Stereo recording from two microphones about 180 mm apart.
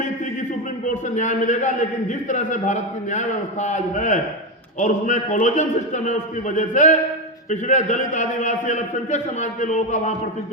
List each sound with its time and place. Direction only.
1.1 s a man's voice: 40° left (ahead or behind)